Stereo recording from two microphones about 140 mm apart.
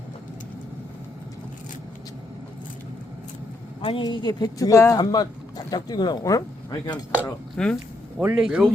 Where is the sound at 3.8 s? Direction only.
40° left (ahead or behind).